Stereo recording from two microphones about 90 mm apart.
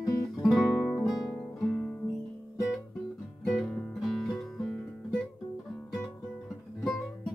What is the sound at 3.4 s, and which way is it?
Guitar, 10° left (ahead or behind).